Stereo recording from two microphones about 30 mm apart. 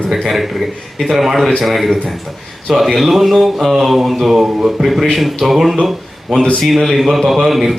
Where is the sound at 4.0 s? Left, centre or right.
Centre.